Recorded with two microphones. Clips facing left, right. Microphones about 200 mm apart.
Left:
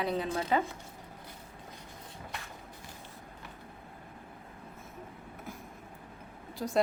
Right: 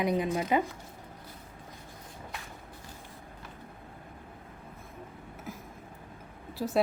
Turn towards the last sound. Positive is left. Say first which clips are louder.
# right 3 dB
turn(degrees=-5)  # may be behind; listen again after turning